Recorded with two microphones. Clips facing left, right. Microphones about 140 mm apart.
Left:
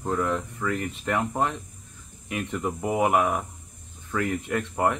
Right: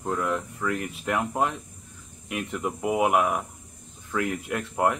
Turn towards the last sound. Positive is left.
turn(degrees=0)  # may be behind; listen again after turning